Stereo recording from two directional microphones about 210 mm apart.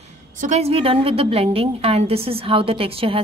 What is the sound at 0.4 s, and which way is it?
Speech, 30° right (ahead or behind).